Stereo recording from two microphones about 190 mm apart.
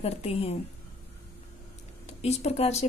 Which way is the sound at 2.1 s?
35° left (ahead or behind).